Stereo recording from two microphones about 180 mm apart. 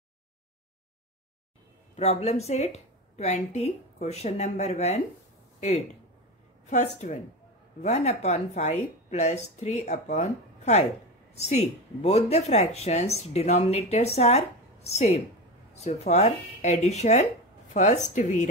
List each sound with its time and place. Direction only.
2.0 s speech: 35° left (ahead or behind)
6.6 s a sound: 40° left (ahead or behind)
7.8 s speech: 40° left (ahead or behind)